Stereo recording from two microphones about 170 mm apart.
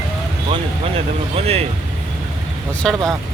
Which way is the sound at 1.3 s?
35° right (ahead or behind).